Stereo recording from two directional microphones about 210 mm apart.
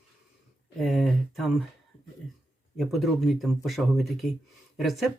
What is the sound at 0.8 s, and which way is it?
Speech, centre (ahead or behind).